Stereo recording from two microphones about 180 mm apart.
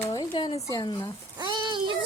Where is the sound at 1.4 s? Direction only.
25° right (ahead or behind).